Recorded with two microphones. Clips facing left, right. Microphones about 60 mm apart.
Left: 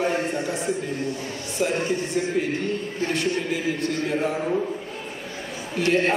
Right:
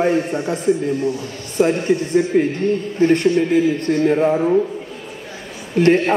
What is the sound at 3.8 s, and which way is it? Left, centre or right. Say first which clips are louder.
Speech: right 9 dB; right.